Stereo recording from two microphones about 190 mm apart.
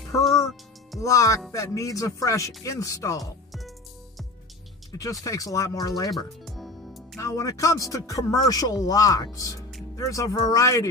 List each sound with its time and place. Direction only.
0.2 s music: centre (ahead or behind)
1.0 s speech: 15° left (ahead or behind)
5.2 s speech: 15° left (ahead or behind)
6.0 s music: centre (ahead or behind)
7.2 s speech: 15° left (ahead or behind)